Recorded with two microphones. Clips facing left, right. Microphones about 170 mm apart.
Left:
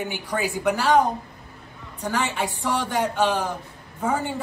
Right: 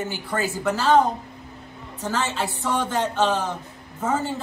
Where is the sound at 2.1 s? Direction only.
15° left (ahead or behind).